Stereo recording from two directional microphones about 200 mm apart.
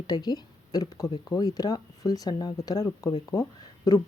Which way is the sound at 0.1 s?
20° left (ahead or behind).